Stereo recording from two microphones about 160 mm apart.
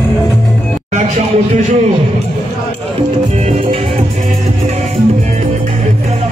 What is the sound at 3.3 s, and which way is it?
Music, 40° right (ahead or behind).